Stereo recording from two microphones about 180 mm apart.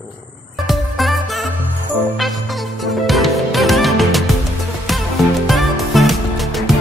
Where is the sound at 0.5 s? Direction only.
Centre (ahead or behind).